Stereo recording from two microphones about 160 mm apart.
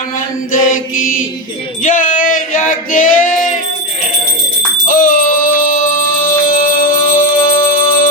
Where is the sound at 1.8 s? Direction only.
55° left (ahead or behind).